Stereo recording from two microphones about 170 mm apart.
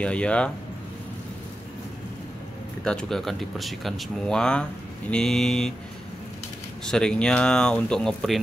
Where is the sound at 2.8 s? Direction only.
5° left (ahead or behind).